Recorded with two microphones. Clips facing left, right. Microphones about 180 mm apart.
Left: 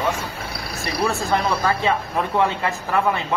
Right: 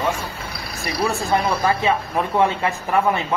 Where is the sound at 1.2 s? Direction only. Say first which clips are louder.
Right 1 dB; 15° right (ahead or behind).